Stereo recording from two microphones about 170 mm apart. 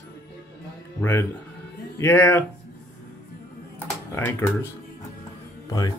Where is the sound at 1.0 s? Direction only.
15° left (ahead or behind).